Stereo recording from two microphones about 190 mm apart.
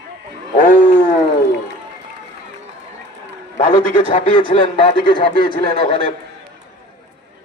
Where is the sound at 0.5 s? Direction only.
40° left (ahead or behind).